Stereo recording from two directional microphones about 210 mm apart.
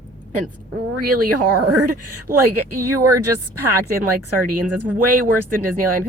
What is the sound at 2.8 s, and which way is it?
Speech, 15° right (ahead or behind).